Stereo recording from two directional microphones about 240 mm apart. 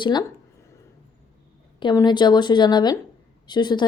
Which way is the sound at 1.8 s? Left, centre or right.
Centre.